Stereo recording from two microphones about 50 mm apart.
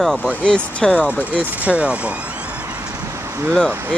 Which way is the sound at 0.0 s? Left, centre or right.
Centre.